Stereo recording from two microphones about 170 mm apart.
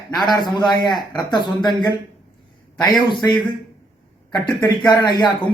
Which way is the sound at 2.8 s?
25° left (ahead or behind).